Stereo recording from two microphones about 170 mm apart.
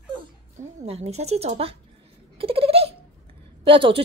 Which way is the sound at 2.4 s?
35° right (ahead or behind).